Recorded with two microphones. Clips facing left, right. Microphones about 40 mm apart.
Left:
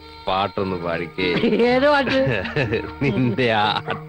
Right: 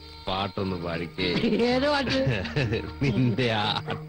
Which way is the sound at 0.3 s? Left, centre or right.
Left.